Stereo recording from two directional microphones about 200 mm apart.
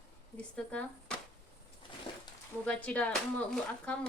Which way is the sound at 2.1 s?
25° left (ahead or behind).